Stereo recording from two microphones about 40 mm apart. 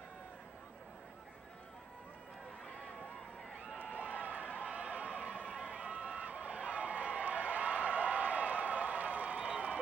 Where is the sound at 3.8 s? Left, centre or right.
Right.